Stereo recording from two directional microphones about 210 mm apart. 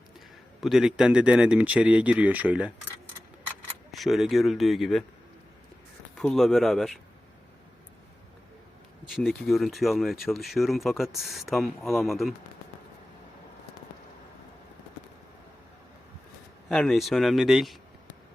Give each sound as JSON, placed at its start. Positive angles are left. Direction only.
{"t": 0.6, "sound": "speech", "side_deg": 0}
{"t": 3.9, "sound": "speech", "side_deg": 0}
{"t": 6.1, "sound": "speech", "side_deg": 0}
{"t": 9.0, "sound": "speech", "side_deg": 0}
{"t": 16.6, "sound": "speech", "side_deg": 0}